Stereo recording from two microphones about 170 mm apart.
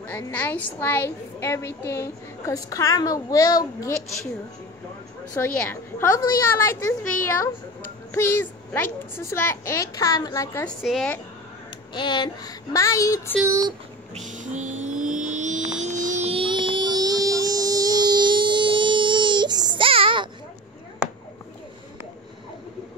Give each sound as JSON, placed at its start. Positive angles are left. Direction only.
{"t": 0.3, "sound": "a woman's voice", "side_deg": 10}
{"t": 5.3, "sound": "a woman's voice", "side_deg": 15}
{"t": 8.1, "sound": "a woman's voice", "side_deg": 15}
{"t": 10.8, "sound": "speech", "side_deg": 0}
{"t": 11.9, "sound": "a woman's voice", "side_deg": 25}
{"t": 13.5, "sound": "speech", "side_deg": -20}
{"t": 14.1, "sound": "vehicle", "side_deg": -45}